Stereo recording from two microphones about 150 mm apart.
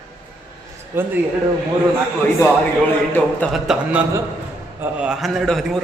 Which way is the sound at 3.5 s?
5° right (ahead or behind).